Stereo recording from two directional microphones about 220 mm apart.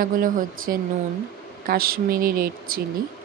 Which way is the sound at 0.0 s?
40° right (ahead or behind).